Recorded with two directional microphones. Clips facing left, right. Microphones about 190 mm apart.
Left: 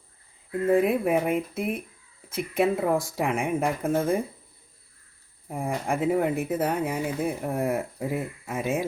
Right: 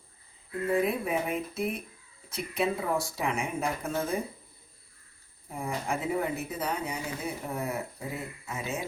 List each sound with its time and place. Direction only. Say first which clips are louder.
0.7 s speech: left 6 dB; 55° left (ahead or behind)
5.5 s speech: left 5 dB; 55° left (ahead or behind)